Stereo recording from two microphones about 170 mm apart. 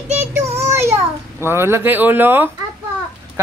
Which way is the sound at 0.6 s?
15° right (ahead or behind).